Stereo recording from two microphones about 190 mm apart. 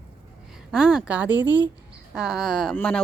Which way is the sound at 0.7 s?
5° right (ahead or behind).